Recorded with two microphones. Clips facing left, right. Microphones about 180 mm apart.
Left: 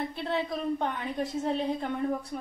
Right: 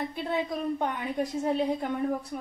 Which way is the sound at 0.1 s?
10° right (ahead or behind).